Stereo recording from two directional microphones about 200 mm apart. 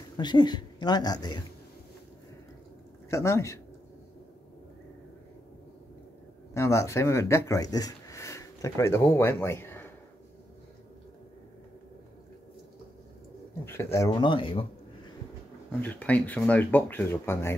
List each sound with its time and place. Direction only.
0.2 s a woman's voice: 20° left (ahead or behind)
3.1 s speech: 15° left (ahead or behind)
6.5 s speech: 15° left (ahead or behind)
13.7 s a woman's voice: 15° left (ahead or behind)
15.8 s speech: 5° left (ahead or behind)